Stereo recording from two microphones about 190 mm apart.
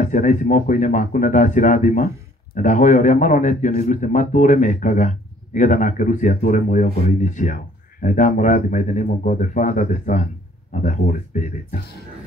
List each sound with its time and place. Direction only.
0.0 s speech: 40° left (ahead or behind)